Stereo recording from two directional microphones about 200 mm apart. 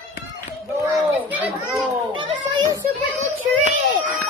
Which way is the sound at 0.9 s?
10° right (ahead or behind).